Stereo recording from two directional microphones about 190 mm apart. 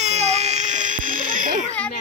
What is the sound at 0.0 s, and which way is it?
Baby cry, 35° right (ahead or behind).